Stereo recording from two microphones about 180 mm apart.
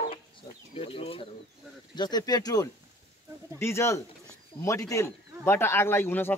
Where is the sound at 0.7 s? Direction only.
30° left (ahead or behind).